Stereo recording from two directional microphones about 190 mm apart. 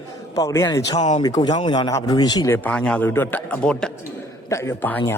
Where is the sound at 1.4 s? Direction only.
25° left (ahead or behind).